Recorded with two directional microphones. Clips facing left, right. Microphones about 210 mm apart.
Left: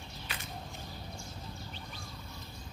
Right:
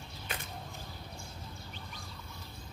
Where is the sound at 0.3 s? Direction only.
50° right (ahead or behind).